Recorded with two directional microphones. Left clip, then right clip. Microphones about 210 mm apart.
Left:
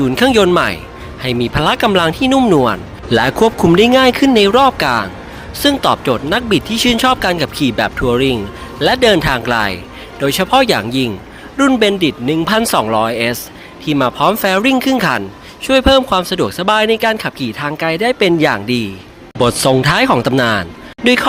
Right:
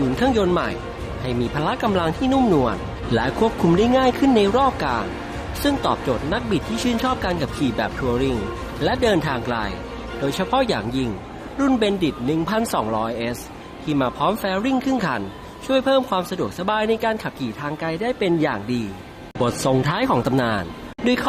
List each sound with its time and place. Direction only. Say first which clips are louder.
0.2 s speech: left 10 dB; 20° left (ahead or behind)